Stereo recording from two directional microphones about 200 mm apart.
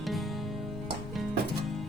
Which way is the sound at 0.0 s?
Centre (ahead or behind).